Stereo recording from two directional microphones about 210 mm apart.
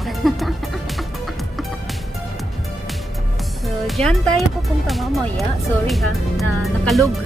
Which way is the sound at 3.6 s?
Centre (ahead or behind).